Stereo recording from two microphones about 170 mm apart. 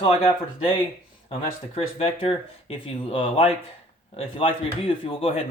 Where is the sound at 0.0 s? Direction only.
30° left (ahead or behind).